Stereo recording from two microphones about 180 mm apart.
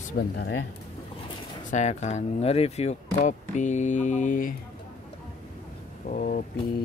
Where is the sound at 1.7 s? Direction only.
40° left (ahead or behind).